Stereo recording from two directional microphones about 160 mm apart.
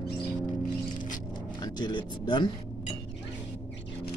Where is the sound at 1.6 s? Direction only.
30° left (ahead or behind).